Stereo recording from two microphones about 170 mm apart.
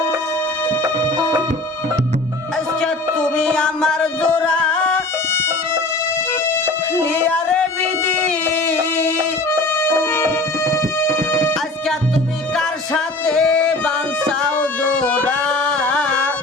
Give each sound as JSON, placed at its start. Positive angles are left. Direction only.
{"t": 0.8, "sound": "music", "side_deg": -25}
{"t": 3.2, "sound": "music", "side_deg": 5}
{"t": 6.9, "sound": "music", "side_deg": 10}
{"t": 8.3, "sound": "a sound", "side_deg": 10}
{"t": 9.5, "sound": "music", "side_deg": 15}
{"t": 12.5, "sound": "music", "side_deg": 5}